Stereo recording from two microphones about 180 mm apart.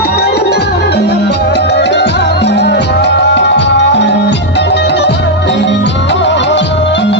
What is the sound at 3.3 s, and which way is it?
Music, 75° left (ahead or behind).